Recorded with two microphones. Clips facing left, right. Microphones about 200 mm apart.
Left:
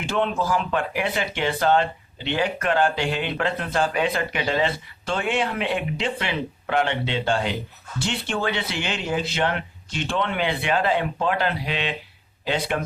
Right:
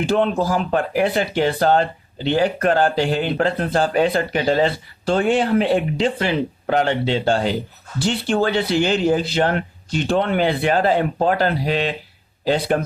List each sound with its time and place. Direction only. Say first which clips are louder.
0.0 s speech: right 6 dB; 35° right (ahead or behind)